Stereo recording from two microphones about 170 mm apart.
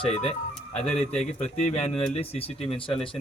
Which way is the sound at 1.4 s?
40° left (ahead or behind).